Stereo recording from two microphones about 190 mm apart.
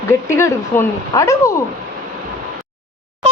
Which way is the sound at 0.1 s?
15° left (ahead or behind).